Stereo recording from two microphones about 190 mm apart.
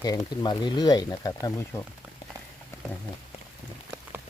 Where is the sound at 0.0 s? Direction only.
20° left (ahead or behind).